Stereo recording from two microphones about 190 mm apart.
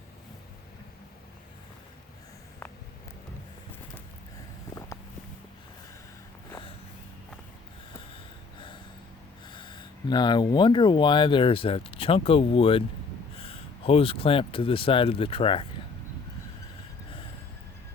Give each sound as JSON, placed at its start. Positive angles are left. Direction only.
{"t": 8.5, "sound": "gasp", "side_deg": 25}
{"t": 9.5, "sound": "speech", "side_deg": 25}